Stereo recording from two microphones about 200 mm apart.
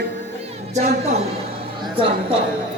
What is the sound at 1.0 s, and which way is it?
Speech, 30° right (ahead or behind).